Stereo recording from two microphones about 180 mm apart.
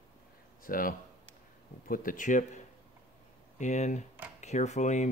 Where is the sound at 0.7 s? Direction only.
50° left (ahead or behind).